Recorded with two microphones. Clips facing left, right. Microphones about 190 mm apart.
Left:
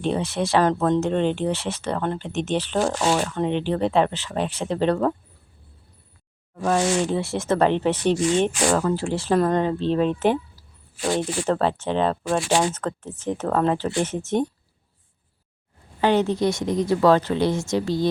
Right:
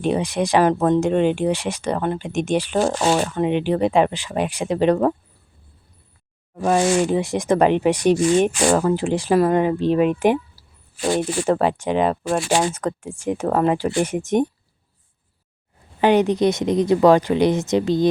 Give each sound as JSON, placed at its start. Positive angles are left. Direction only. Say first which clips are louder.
{"t": 0.0, "sound": "speech", "louder": "right 3 dB", "side_deg": -15}
{"t": 6.6, "sound": "speech", "louder": "right 3 dB", "side_deg": -15}
{"t": 16.0, "sound": "a woman's voice", "louder": "right 4 dB", "side_deg": -15}